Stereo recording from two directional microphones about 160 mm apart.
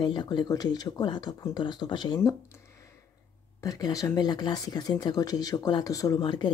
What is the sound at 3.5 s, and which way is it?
Speech, 20° left (ahead or behind).